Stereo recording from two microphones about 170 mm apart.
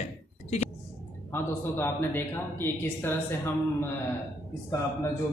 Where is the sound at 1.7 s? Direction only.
10° left (ahead or behind).